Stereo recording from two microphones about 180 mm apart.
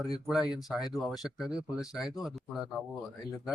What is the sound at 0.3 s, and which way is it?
A man's voice, 5° right (ahead or behind).